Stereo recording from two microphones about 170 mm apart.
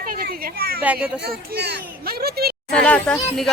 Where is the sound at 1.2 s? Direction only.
75° right (ahead or behind).